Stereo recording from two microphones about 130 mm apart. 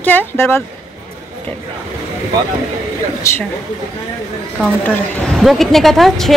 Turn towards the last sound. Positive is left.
turn(degrees=0)  # may be behind; listen again after turning